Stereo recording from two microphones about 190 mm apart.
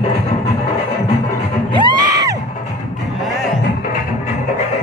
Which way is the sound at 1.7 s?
20° right (ahead or behind).